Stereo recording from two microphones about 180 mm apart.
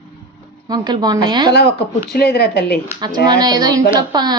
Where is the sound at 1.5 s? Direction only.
65° left (ahead or behind).